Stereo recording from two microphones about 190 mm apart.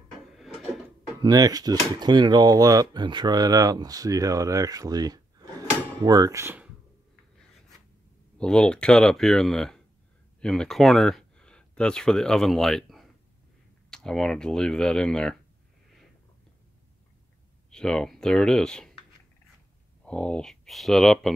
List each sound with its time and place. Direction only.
1.2 s speech: 20° right (ahead or behind)
8.4 s speech: 5° left (ahead or behind)
17.6 s speech: 5° left (ahead or behind)
20.1 s speech: 5° left (ahead or behind)